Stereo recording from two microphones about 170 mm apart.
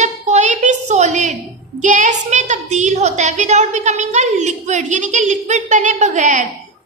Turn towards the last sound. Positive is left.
turn(degrees=-45)  # may be behind; listen again after turning